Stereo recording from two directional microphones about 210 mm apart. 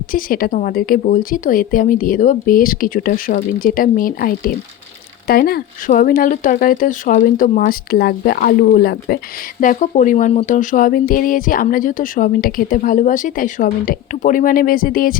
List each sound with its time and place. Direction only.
0.1 s speech: 40° left (ahead or behind)
9.6 s speech: 40° left (ahead or behind)